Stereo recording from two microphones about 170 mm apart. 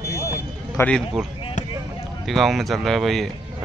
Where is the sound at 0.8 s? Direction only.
15° left (ahead or behind).